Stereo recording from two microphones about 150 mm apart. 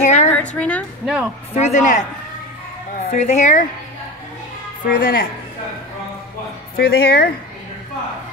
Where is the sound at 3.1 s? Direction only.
50° left (ahead or behind).